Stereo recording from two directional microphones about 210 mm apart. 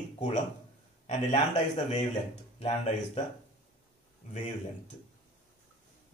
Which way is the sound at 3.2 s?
30° left (ahead or behind).